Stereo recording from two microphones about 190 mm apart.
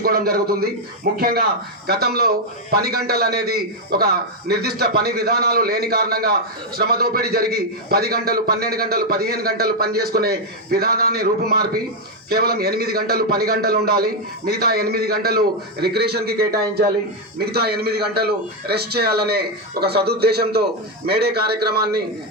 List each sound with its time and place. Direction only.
0.0 s a man's voice: 55° right (ahead or behind)